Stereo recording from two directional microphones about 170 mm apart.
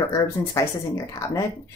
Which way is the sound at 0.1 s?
20° left (ahead or behind).